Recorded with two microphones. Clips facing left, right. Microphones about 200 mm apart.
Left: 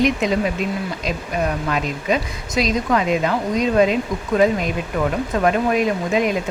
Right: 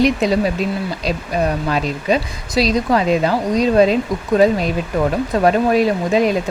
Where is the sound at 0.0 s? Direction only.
35° right (ahead or behind).